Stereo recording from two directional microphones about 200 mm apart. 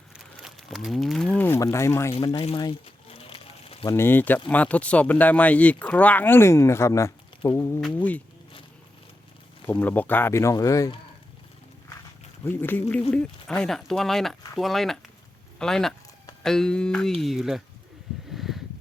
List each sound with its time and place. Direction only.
0.4 s speech: centre (ahead or behind)
2.1 s a sound: 25° left (ahead or behind)
3.8 s speech: 10° left (ahead or behind)
9.6 s speech: 10° left (ahead or behind)
12.5 s speech: 10° left (ahead or behind)
18.3 s a sound: centre (ahead or behind)